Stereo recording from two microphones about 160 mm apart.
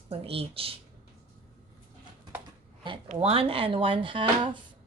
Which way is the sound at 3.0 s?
35° right (ahead or behind).